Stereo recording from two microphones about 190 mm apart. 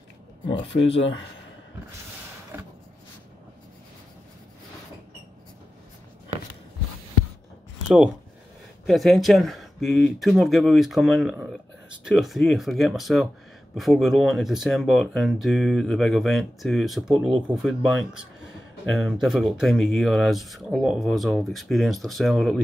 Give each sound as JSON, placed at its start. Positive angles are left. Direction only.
{"t": 0.7, "sound": "speech", "side_deg": 35}
{"t": 2.5, "sound": "a sound", "side_deg": -10}
{"t": 8.8, "sound": "speech", "side_deg": 0}